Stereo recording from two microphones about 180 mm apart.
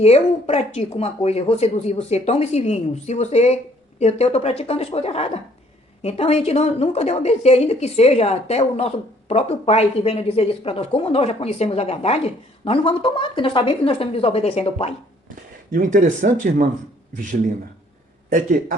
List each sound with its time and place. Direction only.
0.0 s speech: 35° left (ahead or behind)
15.7 s speech: 45° right (ahead or behind)
18.3 s speech: 45° right (ahead or behind)